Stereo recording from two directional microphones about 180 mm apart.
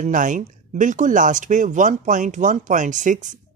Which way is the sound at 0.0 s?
45° right (ahead or behind).